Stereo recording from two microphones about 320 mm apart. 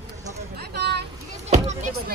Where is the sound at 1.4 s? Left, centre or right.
Right.